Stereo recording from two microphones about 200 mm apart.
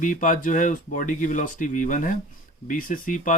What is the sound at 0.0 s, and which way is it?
Speech, 40° left (ahead or behind).